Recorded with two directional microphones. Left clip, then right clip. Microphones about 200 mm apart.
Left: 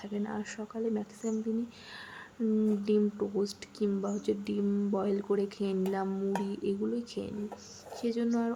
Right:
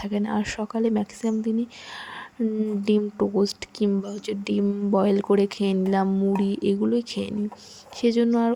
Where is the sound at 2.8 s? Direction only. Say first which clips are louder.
Right 6 dB; 35° right (ahead or behind).